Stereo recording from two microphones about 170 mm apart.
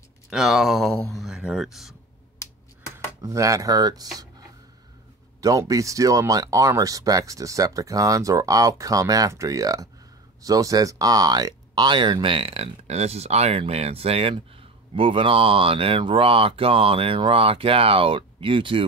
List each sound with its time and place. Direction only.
0.3 s speech: centre (ahead or behind)
3.2 s speech: 20° right (ahead or behind)
5.4 s speech: 20° right (ahead or behind)